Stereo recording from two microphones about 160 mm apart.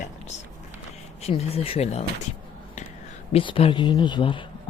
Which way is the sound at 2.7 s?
50° left (ahead or behind).